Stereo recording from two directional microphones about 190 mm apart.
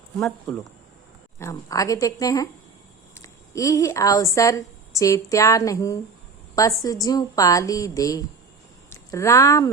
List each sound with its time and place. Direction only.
0.5 s a woman's voice: 5° left (ahead or behind)